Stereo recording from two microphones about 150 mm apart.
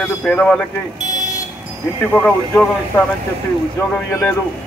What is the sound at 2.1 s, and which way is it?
Speech, 10° left (ahead or behind).